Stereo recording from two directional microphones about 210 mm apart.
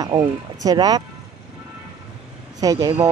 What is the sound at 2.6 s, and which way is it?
Speech, 15° right (ahead or behind).